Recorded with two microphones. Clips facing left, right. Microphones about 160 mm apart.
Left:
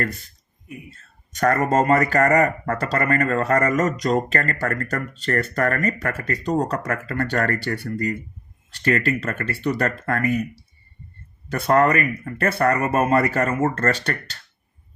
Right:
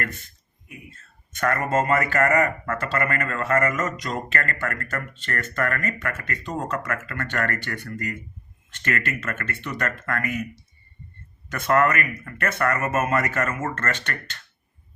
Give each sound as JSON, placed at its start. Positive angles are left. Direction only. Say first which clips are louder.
{"t": 0.9, "sound": "speech", "louder": "left 3 dB", "side_deg": 35}